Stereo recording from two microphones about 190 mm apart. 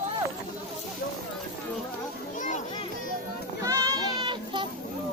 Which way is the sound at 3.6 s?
20° right (ahead or behind).